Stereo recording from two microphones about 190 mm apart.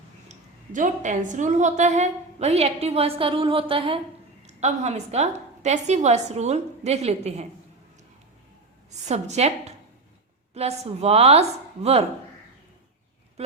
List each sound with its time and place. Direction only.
0.3 s a woman's voice: 40° right (ahead or behind)
9.0 s a woman's voice: 35° right (ahead or behind)